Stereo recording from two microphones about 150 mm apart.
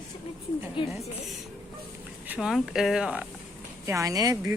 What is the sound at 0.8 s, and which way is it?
Speech, 35° left (ahead or behind).